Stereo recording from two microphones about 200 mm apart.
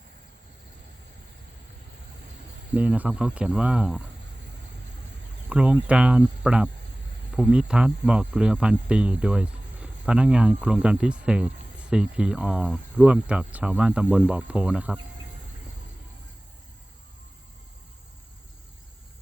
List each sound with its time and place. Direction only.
2.7 s speech: 5° right (ahead or behind)
5.5 s speech: 5° right (ahead or behind)